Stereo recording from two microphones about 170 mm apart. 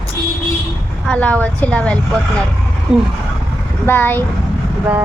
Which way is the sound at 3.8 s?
10° left (ahead or behind).